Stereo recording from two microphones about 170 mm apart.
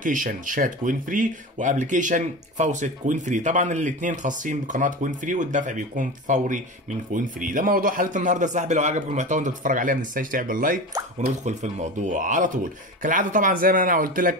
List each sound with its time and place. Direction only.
0.0 s speech: 50° right (ahead or behind)
11.4 s speech: 45° right (ahead or behind)